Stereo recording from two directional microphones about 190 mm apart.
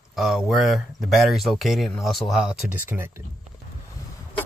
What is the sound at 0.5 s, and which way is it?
Speech, centre (ahead or behind).